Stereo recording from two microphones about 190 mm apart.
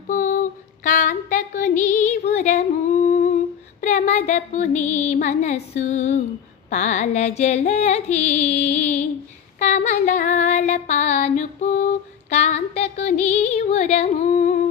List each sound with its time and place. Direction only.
0.1 s a sound: 45° left (ahead or behind)
2.3 s singing: 40° left (ahead or behind)
3.8 s female singing: 40° left (ahead or behind)